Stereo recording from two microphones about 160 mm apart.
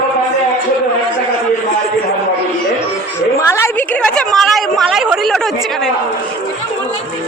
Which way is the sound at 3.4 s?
15° left (ahead or behind).